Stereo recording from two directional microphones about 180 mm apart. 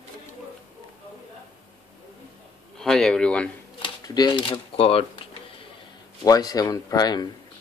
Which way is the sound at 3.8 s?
25° left (ahead or behind).